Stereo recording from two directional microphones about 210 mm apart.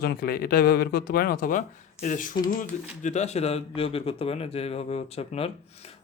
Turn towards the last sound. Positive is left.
turn(degrees=30)  # may be behind; listen again after turning